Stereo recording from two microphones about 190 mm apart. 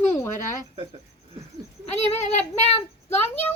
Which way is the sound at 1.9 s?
35° left (ahead or behind).